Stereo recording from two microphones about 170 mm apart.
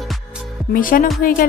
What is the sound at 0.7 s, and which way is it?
Speech, 55° left (ahead or behind).